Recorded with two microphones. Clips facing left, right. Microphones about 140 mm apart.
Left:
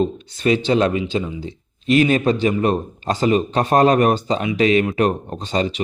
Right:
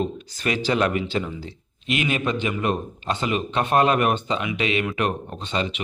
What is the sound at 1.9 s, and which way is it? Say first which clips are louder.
Speech: left 9 dB; 35° left (ahead or behind).